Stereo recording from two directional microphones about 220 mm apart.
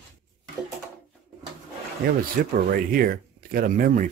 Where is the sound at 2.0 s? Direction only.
40° right (ahead or behind).